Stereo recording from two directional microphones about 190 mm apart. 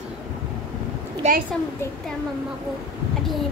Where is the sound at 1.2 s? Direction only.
35° right (ahead or behind).